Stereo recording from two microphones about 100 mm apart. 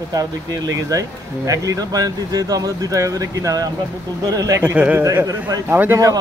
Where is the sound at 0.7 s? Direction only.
35° right (ahead or behind).